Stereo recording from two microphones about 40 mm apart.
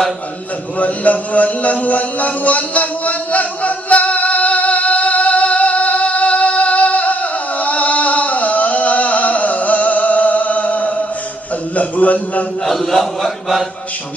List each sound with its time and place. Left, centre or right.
0.7 s mantra: left
11.7 s a sound: left
12.6 s mantra: centre